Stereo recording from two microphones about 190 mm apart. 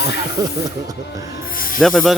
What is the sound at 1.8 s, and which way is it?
Speech, centre (ahead or behind).